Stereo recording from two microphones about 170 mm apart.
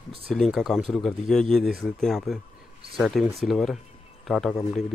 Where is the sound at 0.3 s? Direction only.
Centre (ahead or behind).